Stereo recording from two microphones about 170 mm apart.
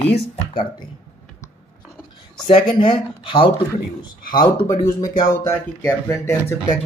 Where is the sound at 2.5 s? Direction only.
30° left (ahead or behind).